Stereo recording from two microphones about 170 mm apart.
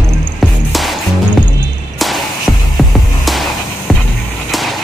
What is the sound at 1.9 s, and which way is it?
Music, centre (ahead or behind).